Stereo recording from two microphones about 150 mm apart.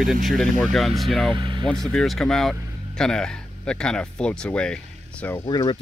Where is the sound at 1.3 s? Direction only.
30° right (ahead or behind).